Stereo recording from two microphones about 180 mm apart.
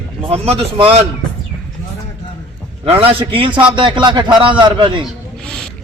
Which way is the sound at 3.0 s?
30° right (ahead or behind).